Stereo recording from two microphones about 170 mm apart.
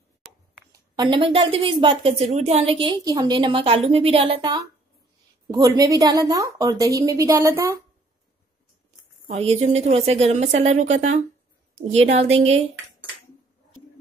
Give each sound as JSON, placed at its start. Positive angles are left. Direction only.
{"t": 0.2, "sound": "a sound", "side_deg": 5}
{"t": 0.9, "sound": "a woman's voice", "side_deg": -25}
{"t": 9.4, "sound": "a woman's voice", "side_deg": -40}